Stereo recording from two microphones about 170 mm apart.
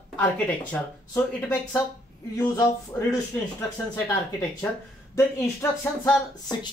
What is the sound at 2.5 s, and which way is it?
Speech, 20° left (ahead or behind).